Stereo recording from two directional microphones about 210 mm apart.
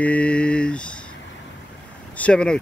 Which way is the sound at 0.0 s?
5° left (ahead or behind).